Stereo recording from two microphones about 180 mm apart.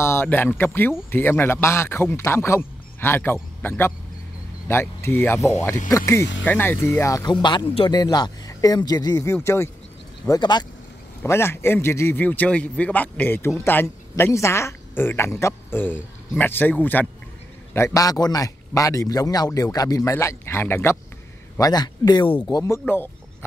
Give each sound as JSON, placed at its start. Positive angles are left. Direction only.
{"t": 0.0, "sound": "a man's voice", "side_deg": 15}
{"t": 11.2, "sound": "a man's voice", "side_deg": 15}